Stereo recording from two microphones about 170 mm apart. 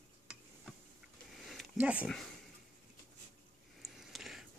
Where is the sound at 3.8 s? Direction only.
Centre (ahead or behind).